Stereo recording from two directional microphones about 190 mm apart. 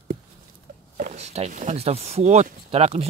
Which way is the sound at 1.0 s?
40° right (ahead or behind).